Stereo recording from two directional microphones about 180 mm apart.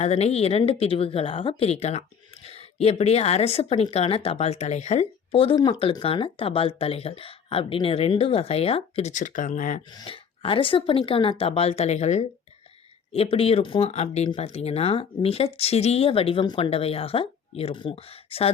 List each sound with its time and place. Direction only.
0.0 s speech: 35° left (ahead or behind)
9.9 s speech: 25° left (ahead or behind)